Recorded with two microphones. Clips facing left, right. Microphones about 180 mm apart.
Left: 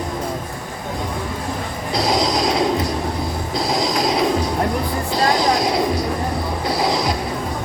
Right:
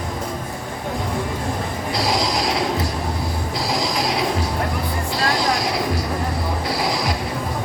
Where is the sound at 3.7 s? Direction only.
20° left (ahead or behind).